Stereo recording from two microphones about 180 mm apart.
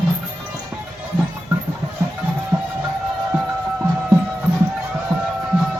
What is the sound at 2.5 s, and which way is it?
Music, 10° right (ahead or behind).